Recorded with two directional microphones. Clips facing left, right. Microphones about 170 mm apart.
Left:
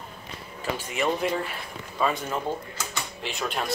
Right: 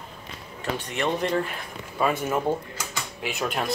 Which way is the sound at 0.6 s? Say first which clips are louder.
Even; 5° left (ahead or behind).